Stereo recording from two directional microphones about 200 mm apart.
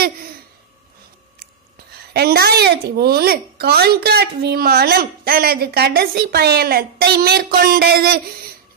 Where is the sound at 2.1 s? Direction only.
50° right (ahead or behind).